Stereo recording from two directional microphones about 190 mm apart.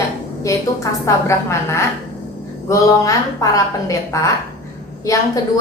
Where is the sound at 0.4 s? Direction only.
15° left (ahead or behind).